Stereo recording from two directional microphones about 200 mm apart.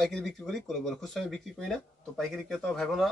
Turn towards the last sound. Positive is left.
turn(degrees=0)  # may be behind; listen again after turning